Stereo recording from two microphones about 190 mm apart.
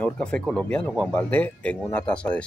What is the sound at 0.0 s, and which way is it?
Speech, 5° left (ahead or behind).